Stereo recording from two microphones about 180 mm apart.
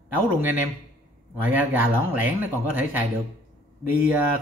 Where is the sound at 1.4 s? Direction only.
10° right (ahead or behind).